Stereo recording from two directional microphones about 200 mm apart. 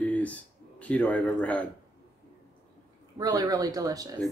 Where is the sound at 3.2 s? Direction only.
20° right (ahead or behind).